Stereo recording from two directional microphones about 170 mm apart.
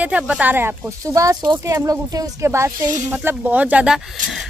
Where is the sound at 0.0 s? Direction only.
10° right (ahead or behind).